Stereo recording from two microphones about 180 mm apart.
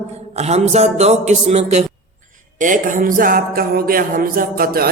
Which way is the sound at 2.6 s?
45° right (ahead or behind).